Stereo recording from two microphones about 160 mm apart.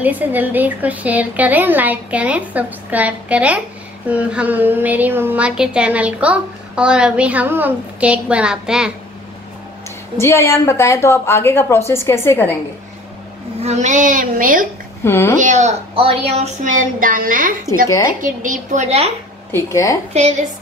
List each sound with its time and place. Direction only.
0.0 s a woman's voice: 10° right (ahead or behind)
10.1 s a woman's voice: 15° left (ahead or behind)
13.6 s a woman's voice: 45° right (ahead or behind)
15.0 s a woman's voice: 15° left (ahead or behind)
15.4 s a woman's voice: 50° right (ahead or behind)
15.9 s a woman's voice: 35° right (ahead or behind)
19.5 s a woman's voice: 20° left (ahead or behind)
20.1 s a woman's voice: 45° right (ahead or behind)